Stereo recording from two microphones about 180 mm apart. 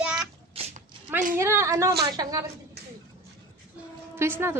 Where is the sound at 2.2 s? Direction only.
20° right (ahead or behind).